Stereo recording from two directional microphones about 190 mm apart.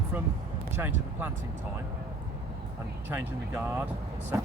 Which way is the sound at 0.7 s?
10° right (ahead or behind).